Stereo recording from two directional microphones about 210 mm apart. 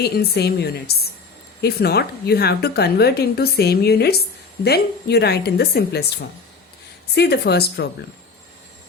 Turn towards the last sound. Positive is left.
turn(degrees=50)  # may be behind; listen again after turning